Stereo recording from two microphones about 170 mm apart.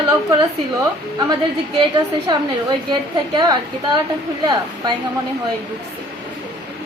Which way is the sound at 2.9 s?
25° right (ahead or behind).